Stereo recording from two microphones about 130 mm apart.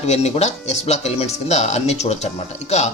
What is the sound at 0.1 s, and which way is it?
Speech, 55° left (ahead or behind).